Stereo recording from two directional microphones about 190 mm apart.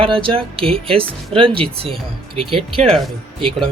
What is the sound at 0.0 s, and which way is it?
Speech, 30° right (ahead or behind).